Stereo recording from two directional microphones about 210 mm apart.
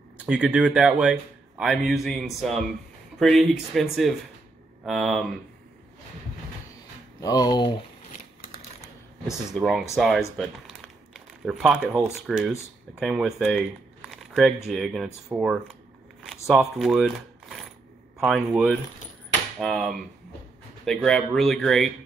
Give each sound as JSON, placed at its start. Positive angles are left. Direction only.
{"t": 0.3, "sound": "speech", "side_deg": -5}
{"t": 7.2, "sound": "speech", "side_deg": 20}
{"t": 8.1, "sound": "a sound", "side_deg": 40}
{"t": 9.5, "sound": "a man's voice", "side_deg": 0}